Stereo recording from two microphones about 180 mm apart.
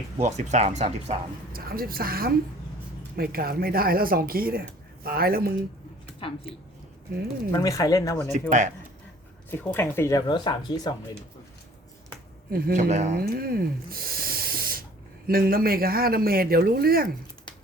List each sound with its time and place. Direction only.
0.2 s speech: 40° right (ahead or behind)
1.5 s speech: 55° right (ahead or behind)
6.2 s speech: 30° left (ahead or behind)
7.5 s speech: 20° left (ahead or behind)
8.3 s a man's voice: 40° right (ahead or behind)
9.5 s speech: 10° left (ahead or behind)
12.5 s a man's voice: 55° right (ahead or behind)
13.1 s speech: 55° right (ahead or behind)